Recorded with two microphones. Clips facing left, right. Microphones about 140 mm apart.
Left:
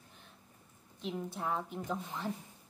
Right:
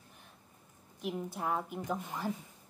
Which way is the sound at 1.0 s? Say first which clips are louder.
Right 1 dB; 10° right (ahead or behind).